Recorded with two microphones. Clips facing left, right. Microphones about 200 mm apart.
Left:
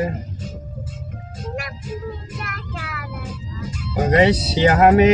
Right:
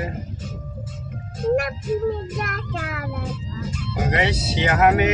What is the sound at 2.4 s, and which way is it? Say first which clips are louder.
Child singing: right 4 dB; 45° right (ahead or behind).